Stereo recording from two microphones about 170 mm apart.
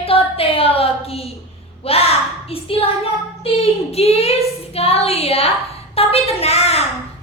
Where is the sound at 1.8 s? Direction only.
35° left (ahead or behind).